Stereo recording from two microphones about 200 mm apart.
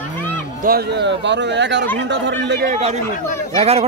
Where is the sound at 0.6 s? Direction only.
50° right (ahead or behind).